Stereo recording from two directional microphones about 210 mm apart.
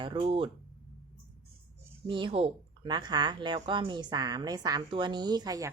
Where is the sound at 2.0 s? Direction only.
25° right (ahead or behind).